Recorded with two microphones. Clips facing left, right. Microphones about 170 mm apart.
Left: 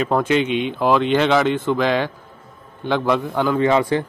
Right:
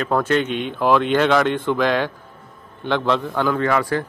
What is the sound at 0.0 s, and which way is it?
Speech, 10° left (ahead or behind).